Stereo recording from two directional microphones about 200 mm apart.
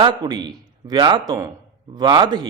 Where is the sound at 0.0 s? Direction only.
20° right (ahead or behind).